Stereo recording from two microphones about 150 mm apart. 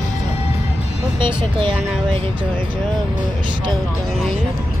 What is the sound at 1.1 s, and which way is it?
Speech, 30° right (ahead or behind).